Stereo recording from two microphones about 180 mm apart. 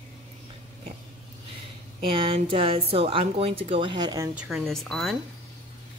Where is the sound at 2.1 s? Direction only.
30° right (ahead or behind).